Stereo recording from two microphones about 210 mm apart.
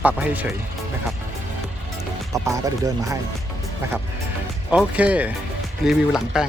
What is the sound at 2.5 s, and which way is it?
Speech, 15° right (ahead or behind).